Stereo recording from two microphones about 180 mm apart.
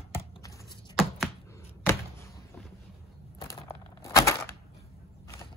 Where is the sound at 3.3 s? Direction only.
15° left (ahead or behind).